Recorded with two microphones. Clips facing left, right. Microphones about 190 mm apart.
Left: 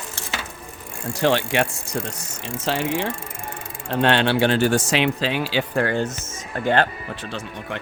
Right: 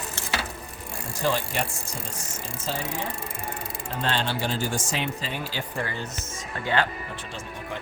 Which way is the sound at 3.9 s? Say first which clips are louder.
Left 9 dB; 70° left (ahead or behind).